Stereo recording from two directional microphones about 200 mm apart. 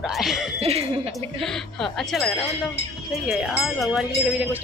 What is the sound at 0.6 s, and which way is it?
Speech, 30° right (ahead or behind).